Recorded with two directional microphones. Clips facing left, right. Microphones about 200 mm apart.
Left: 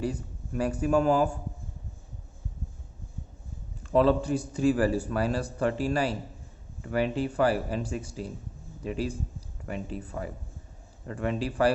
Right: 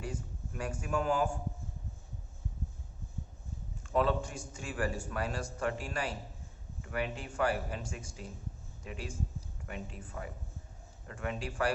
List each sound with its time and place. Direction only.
0.0 s a man's voice: 35° left (ahead or behind)
3.9 s a man's voice: 35° left (ahead or behind)